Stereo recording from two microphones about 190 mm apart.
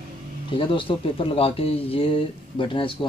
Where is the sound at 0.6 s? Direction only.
30° left (ahead or behind).